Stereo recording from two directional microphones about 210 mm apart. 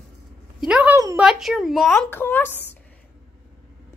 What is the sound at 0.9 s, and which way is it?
Speech, 15° right (ahead or behind).